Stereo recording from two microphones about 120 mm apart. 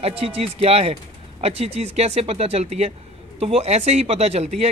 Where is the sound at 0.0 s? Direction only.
55° right (ahead or behind).